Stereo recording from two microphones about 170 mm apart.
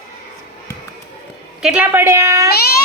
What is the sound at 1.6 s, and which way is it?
Speech, 5° right (ahead or behind).